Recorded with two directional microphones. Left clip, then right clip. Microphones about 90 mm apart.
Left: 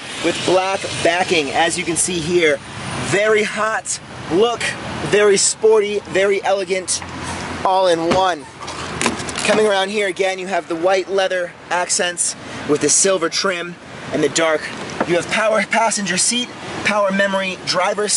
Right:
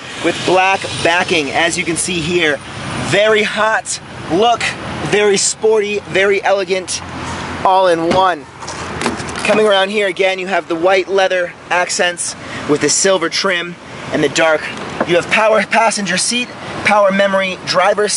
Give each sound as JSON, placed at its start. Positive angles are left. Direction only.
{"t": 0.2, "sound": "speech", "side_deg": 25}
{"t": 1.0, "sound": "speech", "side_deg": 5}
{"t": 9.5, "sound": "speech", "side_deg": 15}